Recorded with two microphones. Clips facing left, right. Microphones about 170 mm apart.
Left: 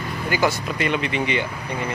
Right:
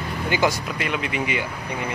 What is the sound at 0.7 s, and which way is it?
Speech, 5° right (ahead or behind).